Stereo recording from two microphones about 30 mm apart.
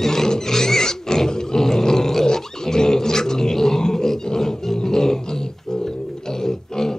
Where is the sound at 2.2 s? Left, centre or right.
Centre.